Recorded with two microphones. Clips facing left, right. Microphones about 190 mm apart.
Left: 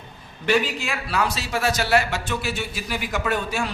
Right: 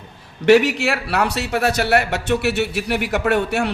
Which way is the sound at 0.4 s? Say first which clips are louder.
Right 9 dB; 75° right (ahead or behind).